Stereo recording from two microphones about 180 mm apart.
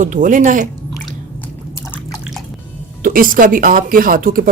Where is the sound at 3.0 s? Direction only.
50° right (ahead or behind).